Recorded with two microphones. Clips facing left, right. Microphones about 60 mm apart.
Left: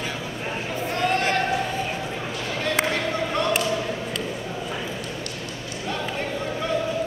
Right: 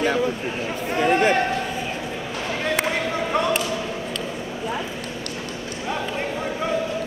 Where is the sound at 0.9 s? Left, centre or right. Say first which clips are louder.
Right 5 dB; centre.